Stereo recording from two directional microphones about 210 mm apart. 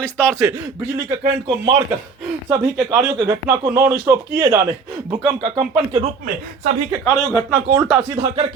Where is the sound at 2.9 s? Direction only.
15° right (ahead or behind).